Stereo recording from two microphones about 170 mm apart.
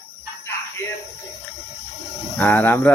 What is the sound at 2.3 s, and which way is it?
Speech, 10° left (ahead or behind).